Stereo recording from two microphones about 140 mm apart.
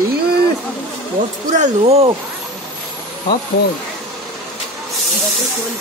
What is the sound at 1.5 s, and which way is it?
Speech, 55° right (ahead or behind).